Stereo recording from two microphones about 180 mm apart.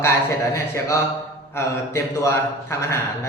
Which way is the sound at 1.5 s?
15° left (ahead or behind).